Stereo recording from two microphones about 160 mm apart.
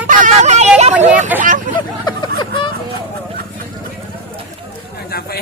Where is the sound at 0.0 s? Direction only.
55° right (ahead or behind).